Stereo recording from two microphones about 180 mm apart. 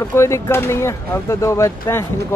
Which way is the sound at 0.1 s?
15° left (ahead or behind).